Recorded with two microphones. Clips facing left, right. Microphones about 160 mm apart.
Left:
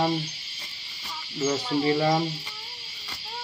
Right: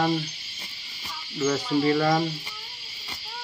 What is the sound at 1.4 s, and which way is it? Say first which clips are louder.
Speech: right 2 dB; 25° left (ahead or behind).